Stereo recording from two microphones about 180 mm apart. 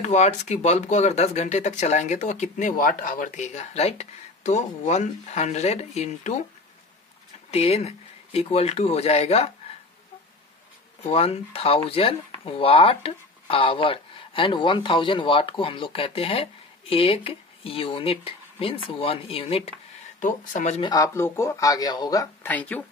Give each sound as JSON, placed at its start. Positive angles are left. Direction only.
{"t": 0.0, "sound": "speech", "side_deg": 40}
{"t": 7.5, "sound": "speech", "side_deg": 35}
{"t": 11.1, "sound": "speech", "side_deg": 35}
{"t": 20.2, "sound": "speech", "side_deg": 45}
{"t": 20.8, "sound": "speech", "side_deg": 20}
{"t": 22.5, "sound": "speech", "side_deg": 10}